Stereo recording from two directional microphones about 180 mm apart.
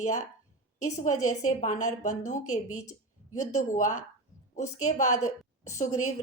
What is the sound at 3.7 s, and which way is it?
Speech, 45° left (ahead or behind).